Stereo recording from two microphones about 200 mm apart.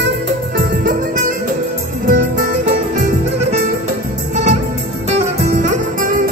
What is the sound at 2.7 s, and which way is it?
Music, 40° right (ahead or behind).